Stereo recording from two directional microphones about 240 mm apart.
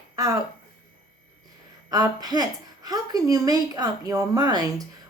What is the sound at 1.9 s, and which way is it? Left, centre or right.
A woman's voice, centre.